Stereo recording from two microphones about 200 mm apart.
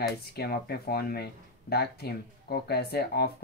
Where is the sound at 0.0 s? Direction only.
50° left (ahead or behind).